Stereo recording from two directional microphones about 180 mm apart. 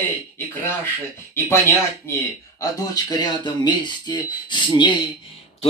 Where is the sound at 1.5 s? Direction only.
15° left (ahead or behind).